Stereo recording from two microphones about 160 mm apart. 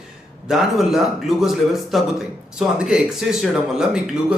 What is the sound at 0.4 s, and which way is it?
Speech, centre (ahead or behind).